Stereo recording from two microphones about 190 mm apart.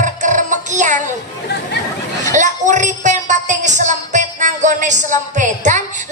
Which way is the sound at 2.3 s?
40° right (ahead or behind).